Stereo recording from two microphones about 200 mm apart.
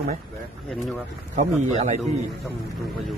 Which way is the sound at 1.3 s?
35° right (ahead or behind).